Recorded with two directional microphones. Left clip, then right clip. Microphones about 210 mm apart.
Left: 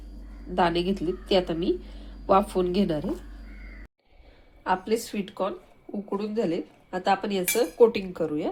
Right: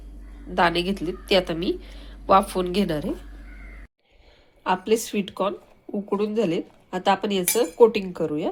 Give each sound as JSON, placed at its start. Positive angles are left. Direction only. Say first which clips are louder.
{"t": 0.5, "sound": "a woman's voice", "louder": "right 3 dB", "side_deg": 0}
{"t": 4.9, "sound": "speech", "louder": "right 5 dB", "side_deg": -25}